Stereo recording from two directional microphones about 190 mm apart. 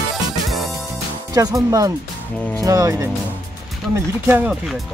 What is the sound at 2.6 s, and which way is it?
Speech, 20° right (ahead or behind).